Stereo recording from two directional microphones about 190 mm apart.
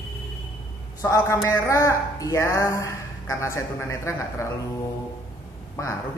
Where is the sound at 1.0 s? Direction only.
15° left (ahead or behind).